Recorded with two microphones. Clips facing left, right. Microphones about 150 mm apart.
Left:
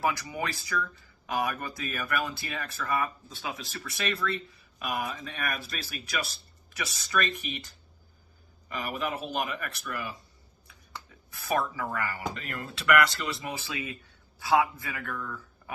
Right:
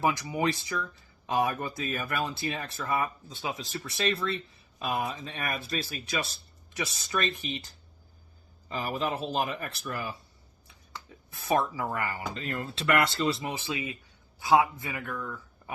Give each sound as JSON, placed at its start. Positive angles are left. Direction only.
{"t": 0.0, "sound": "speech", "side_deg": -20}
{"t": 8.7, "sound": "speech", "side_deg": -30}
{"t": 11.3, "sound": "speech", "side_deg": -25}